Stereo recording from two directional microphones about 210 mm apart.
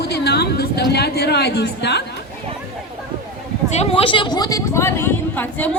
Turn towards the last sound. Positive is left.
turn(degrees=10)  # may be behind; listen again after turning